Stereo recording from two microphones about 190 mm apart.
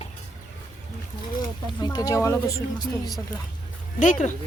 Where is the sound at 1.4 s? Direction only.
20° left (ahead or behind).